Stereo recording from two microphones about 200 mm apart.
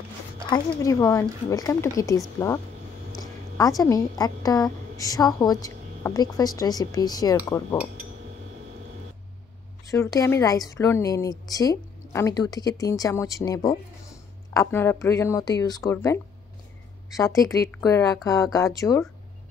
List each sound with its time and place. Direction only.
0.5 s a woman's voice: 15° left (ahead or behind)
9.8 s a woman's voice: 15° left (ahead or behind)
17.2 s a woman's voice: 15° left (ahead or behind)